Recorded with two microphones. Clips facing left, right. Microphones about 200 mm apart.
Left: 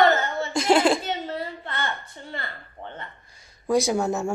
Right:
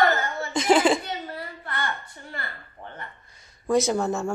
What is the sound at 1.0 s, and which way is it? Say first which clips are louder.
A child's voice: left 4 dB; 25° left (ahead or behind).